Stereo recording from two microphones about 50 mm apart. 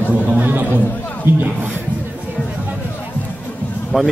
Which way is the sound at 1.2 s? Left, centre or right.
Right.